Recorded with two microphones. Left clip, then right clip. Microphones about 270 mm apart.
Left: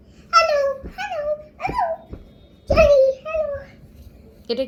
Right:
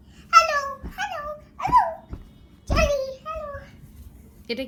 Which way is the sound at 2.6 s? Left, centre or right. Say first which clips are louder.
Left 10 dB; right.